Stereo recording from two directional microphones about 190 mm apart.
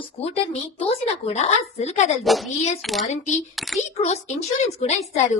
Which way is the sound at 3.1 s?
40° left (ahead or behind).